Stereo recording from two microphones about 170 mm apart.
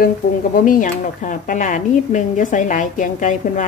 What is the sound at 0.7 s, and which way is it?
Speech, 50° left (ahead or behind).